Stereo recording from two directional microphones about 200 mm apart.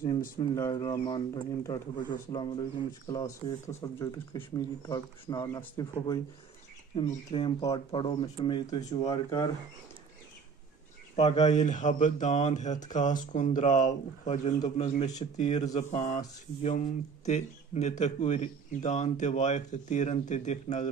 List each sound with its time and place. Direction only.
0.6 s speech: 15° left (ahead or behind)
7.0 s speech: 30° left (ahead or behind)
11.1 s a man's voice: 35° left (ahead or behind)